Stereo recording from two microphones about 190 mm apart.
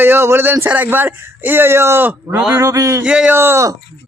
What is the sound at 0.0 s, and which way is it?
A man's voice, 10° right (ahead or behind).